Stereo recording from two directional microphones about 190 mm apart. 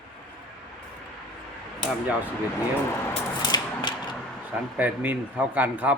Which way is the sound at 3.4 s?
20° left (ahead or behind).